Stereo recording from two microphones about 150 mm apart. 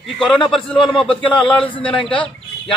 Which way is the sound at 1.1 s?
35° left (ahead or behind).